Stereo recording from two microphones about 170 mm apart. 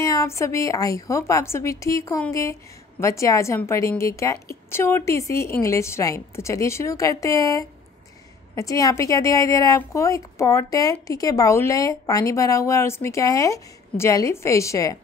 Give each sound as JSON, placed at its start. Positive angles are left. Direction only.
{"t": 0.0, "sound": "a woman's voice", "side_deg": 20}